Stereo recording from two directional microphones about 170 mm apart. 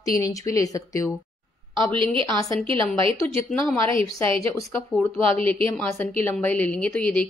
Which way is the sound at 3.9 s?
15° left (ahead or behind).